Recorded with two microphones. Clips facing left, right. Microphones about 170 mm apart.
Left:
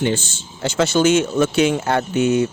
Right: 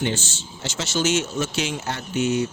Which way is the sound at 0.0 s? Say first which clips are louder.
Left 5 dB; 55° left (ahead or behind).